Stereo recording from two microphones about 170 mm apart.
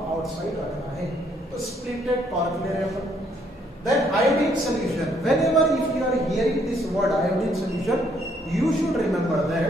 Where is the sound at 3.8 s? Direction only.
Centre (ahead or behind).